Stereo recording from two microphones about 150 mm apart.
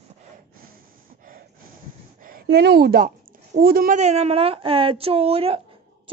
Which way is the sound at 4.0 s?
45° right (ahead or behind).